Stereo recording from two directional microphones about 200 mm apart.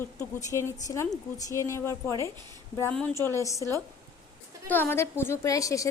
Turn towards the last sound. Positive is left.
turn(degrees=15)  # may be behind; listen again after turning